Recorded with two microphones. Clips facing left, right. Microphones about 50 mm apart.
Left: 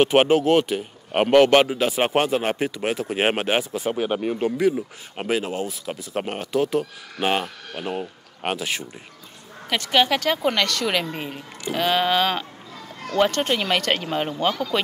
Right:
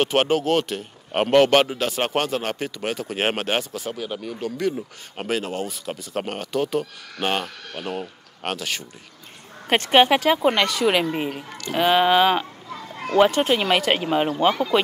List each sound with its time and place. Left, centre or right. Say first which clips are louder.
0.0 s speech: left 3 dB; centre
3.7 s speech: left 6 dB; left
4.6 s speech: left 4 dB; centre
9.7 s speech: right 4 dB; right
10.2 s speech: right 3 dB; centre